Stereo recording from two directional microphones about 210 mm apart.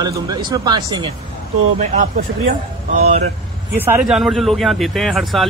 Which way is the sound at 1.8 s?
35° right (ahead or behind).